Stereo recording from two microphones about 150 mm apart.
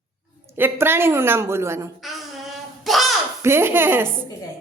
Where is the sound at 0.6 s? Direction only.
15° right (ahead or behind).